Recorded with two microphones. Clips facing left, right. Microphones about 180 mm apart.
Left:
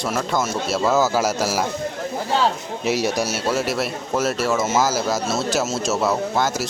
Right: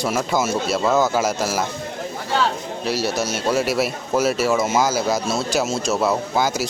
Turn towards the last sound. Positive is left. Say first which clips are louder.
# even
turn(degrees=0)  # may be behind; listen again after turning